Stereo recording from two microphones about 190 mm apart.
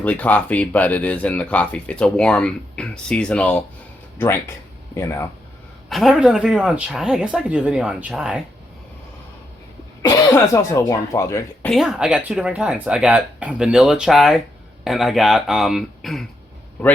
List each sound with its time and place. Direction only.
0.0 s speech: 10° left (ahead or behind)
4.9 s speech: 15° left (ahead or behind)
5.9 s speech: centre (ahead or behind)
10.0 s speech: 20° left (ahead or behind)
11.7 s speech: centre (ahead or behind)